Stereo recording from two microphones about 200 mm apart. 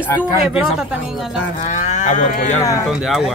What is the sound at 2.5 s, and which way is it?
Speech, 15° left (ahead or behind).